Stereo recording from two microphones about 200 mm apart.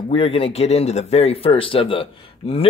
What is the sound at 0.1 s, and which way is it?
Speech, 30° left (ahead or behind).